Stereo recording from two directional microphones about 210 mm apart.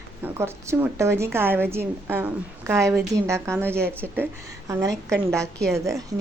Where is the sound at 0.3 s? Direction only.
10° right (ahead or behind).